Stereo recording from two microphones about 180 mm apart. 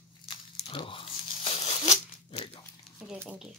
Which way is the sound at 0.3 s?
25° left (ahead or behind).